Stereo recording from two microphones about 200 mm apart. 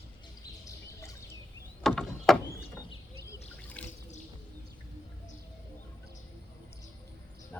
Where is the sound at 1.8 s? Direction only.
Centre (ahead or behind).